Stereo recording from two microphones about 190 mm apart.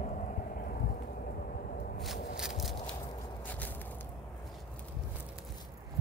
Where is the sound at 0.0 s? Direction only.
40° left (ahead or behind).